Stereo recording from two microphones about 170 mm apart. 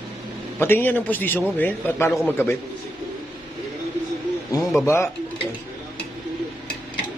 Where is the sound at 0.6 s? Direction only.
10° left (ahead or behind).